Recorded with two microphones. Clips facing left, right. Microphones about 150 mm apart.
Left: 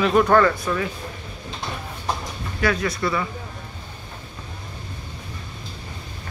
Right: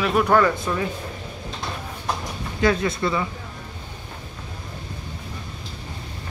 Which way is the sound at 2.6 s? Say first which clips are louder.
Right 2 dB; 25° right (ahead or behind).